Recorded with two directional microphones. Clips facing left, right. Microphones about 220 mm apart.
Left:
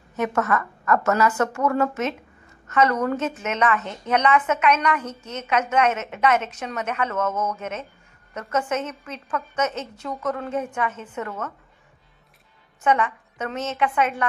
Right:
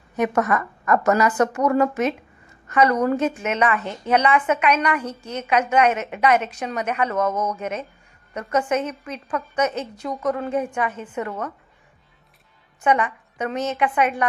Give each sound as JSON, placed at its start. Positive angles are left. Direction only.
{"t": 0.1, "sound": "a woman's voice", "side_deg": -15}
{"t": 3.8, "sound": "a woman's voice", "side_deg": -30}
{"t": 4.1, "sound": "a woman's voice", "side_deg": -10}
{"t": 12.8, "sound": "a woman's voice", "side_deg": -15}